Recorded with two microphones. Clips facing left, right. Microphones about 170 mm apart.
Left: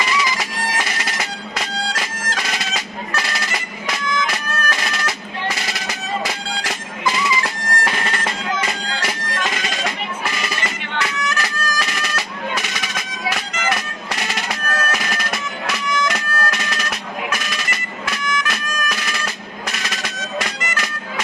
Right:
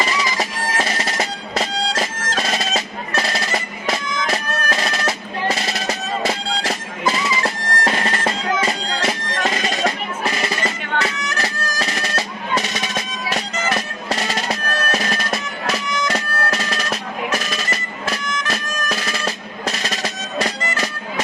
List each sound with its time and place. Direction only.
0.0 s music: 35° right (ahead or behind)
3.8 s bagpipes: 35° right (ahead or behind)
7.4 s bagpipes: 35° right (ahead or behind)